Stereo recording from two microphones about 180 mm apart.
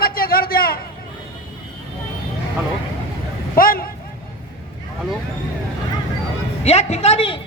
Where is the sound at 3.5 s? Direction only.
55° left (ahead or behind).